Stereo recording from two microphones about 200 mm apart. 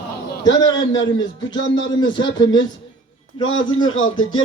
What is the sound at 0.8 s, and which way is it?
A man's voice, 65° left (ahead or behind).